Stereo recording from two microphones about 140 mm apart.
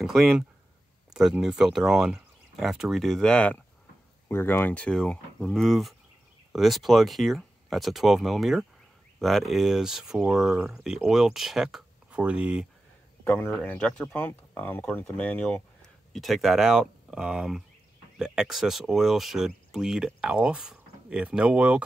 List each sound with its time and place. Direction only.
0.0 s speech: centre (ahead or behind)
13.2 s a man's voice: 15° left (ahead or behind); by 21.8 s 10° right (ahead or behind)